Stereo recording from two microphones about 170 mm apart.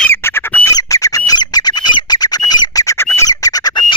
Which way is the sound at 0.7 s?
20° left (ahead or behind).